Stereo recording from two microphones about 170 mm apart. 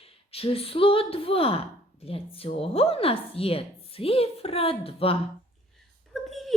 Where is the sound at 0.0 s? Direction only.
35° left (ahead or behind).